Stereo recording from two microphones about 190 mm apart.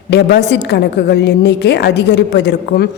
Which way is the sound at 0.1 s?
60° left (ahead or behind).